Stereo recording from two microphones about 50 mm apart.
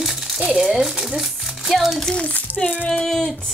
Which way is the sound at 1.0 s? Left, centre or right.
Centre.